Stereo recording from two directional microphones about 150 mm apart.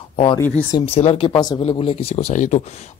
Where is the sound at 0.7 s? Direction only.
40° left (ahead or behind).